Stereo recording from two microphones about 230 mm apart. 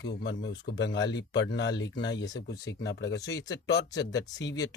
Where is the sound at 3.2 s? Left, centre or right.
Centre.